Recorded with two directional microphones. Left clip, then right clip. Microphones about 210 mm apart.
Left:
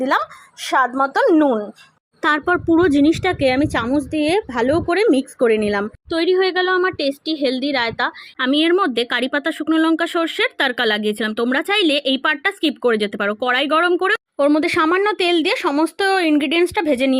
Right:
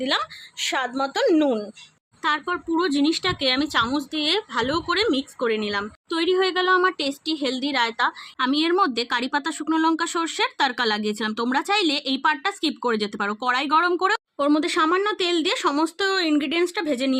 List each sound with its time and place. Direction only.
0.0 s a woman's voice: centre (ahead or behind)
1.2 s speech: 10° left (ahead or behind)
2.2 s speech: 20° left (ahead or behind)
14.3 s speech: 20° left (ahead or behind)